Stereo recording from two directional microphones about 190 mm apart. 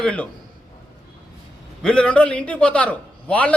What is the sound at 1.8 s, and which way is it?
A man's voice, 5° left (ahead or behind).